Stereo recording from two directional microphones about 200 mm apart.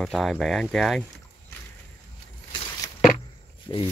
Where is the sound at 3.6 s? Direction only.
25° left (ahead or behind).